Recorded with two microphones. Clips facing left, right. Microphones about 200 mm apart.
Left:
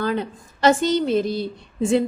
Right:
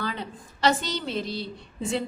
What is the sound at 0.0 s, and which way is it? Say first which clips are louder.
A woman's voice: left 9 dB; 50° left (ahead or behind).